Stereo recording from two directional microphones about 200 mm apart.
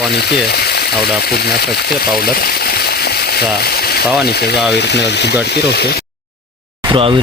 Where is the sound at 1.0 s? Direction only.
50° left (ahead or behind).